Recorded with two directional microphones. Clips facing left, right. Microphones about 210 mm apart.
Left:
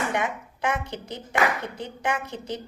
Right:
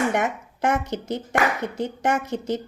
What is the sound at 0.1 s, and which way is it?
A woman's voice, 45° right (ahead or behind).